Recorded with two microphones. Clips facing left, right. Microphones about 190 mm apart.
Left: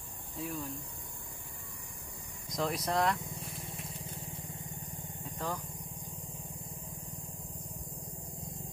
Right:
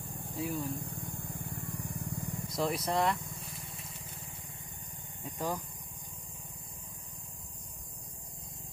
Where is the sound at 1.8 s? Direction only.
60° right (ahead or behind).